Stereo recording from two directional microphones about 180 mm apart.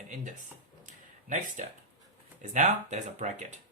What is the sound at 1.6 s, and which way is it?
Speech, 45° right (ahead or behind).